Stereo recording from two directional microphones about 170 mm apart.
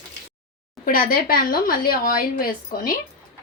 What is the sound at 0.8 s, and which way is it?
Speech, 55° left (ahead or behind).